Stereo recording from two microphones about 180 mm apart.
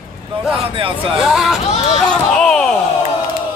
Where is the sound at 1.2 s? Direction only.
Centre (ahead or behind).